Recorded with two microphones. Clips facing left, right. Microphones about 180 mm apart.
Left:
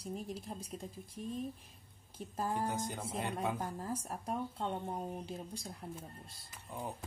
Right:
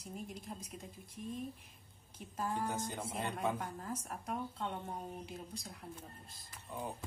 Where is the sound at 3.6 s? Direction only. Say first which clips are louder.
Left 3 dB; 30° left (ahead or behind).